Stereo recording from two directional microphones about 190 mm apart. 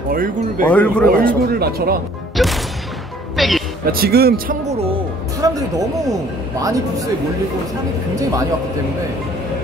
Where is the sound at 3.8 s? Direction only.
50° right (ahead or behind).